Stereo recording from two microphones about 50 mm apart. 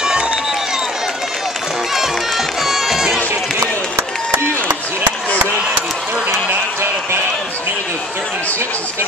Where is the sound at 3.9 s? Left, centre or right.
Right.